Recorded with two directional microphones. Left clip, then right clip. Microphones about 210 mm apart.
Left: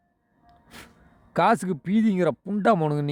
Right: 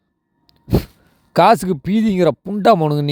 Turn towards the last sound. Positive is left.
turn(degrees=-25)  # may be behind; listen again after turning